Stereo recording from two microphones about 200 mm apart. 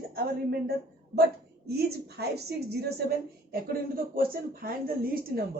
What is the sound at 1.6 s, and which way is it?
Speech, 55° right (ahead or behind).